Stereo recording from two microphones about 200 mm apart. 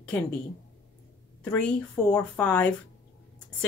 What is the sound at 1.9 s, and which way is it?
Speech, 20° left (ahead or behind).